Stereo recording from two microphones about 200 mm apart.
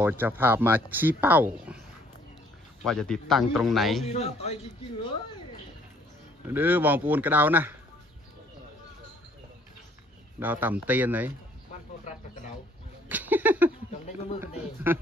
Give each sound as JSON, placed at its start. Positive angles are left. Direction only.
{"t": 0.0, "sound": "speech", "side_deg": -10}
{"t": 2.8, "sound": "a man's voice", "side_deg": 0}
{"t": 4.0, "sound": "a man's voice", "side_deg": 35}
{"t": 6.4, "sound": "speech", "side_deg": -10}
{"t": 10.4, "sound": "speech", "side_deg": -10}
{"t": 13.1, "sound": "a sound", "side_deg": -10}
{"t": 14.4, "sound": "speech", "side_deg": -10}